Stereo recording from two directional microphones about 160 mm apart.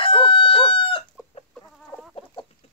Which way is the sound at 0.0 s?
35° left (ahead or behind).